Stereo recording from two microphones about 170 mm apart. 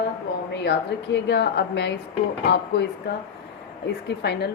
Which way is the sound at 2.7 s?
75° left (ahead or behind).